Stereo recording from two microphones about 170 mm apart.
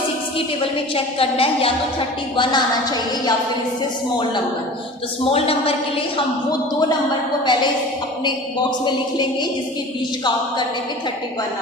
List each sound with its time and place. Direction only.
0.3 s a woman's voice: 35° left (ahead or behind)
5.3 s a woman's voice: 35° left (ahead or behind)
8.8 s a woman's voice: 25° left (ahead or behind)